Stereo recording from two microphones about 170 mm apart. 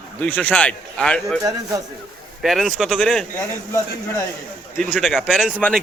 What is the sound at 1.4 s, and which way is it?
Speech, 20° right (ahead or behind).